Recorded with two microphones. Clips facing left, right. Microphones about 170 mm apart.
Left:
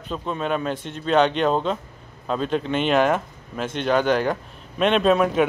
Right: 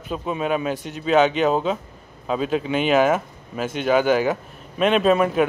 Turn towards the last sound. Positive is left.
turn(degrees=0)  # may be behind; listen again after turning